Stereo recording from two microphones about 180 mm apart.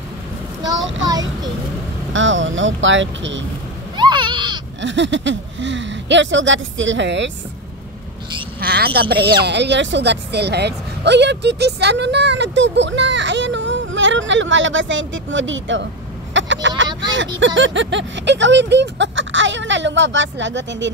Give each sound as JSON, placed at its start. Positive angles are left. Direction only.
{"t": 2.1, "sound": "speech", "side_deg": -90}
{"t": 3.9, "sound": "a sound", "side_deg": -25}
{"t": 4.8, "sound": "speech", "side_deg": -90}
{"t": 8.5, "sound": "a woman's voice", "side_deg": -60}
{"t": 9.4, "sound": "speech", "side_deg": -70}
{"t": 16.3, "sound": "vehicle", "side_deg": -90}
{"t": 17.6, "sound": "speech", "side_deg": -90}